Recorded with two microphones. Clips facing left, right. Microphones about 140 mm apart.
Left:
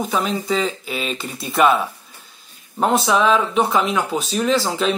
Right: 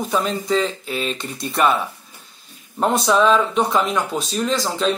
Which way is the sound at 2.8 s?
Centre (ahead or behind).